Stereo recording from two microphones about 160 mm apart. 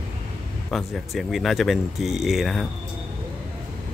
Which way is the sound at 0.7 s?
Centre (ahead or behind).